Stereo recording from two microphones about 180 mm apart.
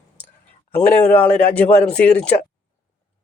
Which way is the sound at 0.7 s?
10° left (ahead or behind).